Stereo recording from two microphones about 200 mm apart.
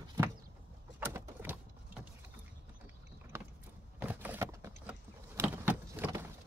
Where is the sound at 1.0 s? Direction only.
10° right (ahead or behind).